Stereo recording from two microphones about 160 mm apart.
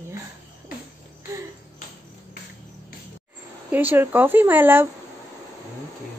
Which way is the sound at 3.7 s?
10° right (ahead or behind).